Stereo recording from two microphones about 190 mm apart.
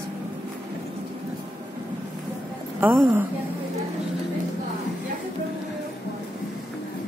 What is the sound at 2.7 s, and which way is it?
Speech, 10° right (ahead or behind).